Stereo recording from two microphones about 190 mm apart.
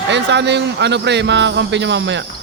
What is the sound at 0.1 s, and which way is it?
Speech, 65° right (ahead or behind).